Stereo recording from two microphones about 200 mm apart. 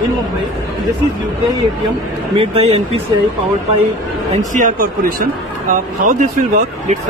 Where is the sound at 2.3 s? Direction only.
30° right (ahead or behind).